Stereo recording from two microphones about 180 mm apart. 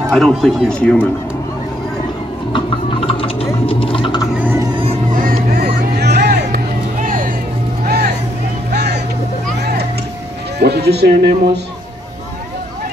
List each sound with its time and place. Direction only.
0.1 s speech: centre (ahead or behind)
3.1 s a sound: 30° left (ahead or behind)
5.1 s a sound: 50° right (ahead or behind)
7.0 s music: 50° right (ahead or behind)
7.8 s music: 60° right (ahead or behind)
8.7 s vehicle: 70° right (ahead or behind)
10.6 s speech: 65° right (ahead or behind)